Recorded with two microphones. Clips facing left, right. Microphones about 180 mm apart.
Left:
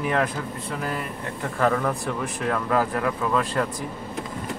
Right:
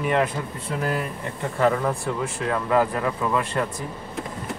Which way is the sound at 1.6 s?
10° right (ahead or behind).